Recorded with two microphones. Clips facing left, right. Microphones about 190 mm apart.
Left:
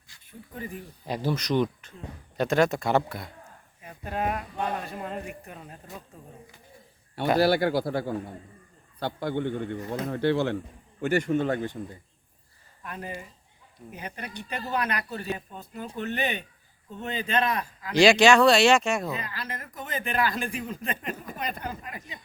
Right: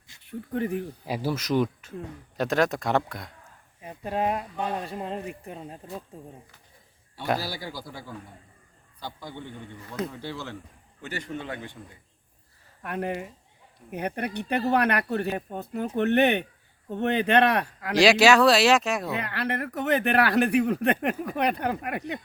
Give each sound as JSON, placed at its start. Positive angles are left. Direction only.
{"t": 0.3, "sound": "speech", "side_deg": -65}
{"t": 1.0, "sound": "speech", "side_deg": -5}
{"t": 3.8, "sound": "speech", "side_deg": -30}
{"t": 7.3, "sound": "a man's voice", "side_deg": 65}
{"t": 11.0, "sound": "a man's voice", "side_deg": 50}
{"t": 12.8, "sound": "speech", "side_deg": -65}
{"t": 17.9, "sound": "speech", "side_deg": 0}
{"t": 19.1, "sound": "speech", "side_deg": -65}